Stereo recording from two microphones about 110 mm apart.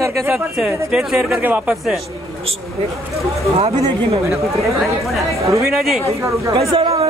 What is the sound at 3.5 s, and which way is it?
Speech, 60° right (ahead or behind).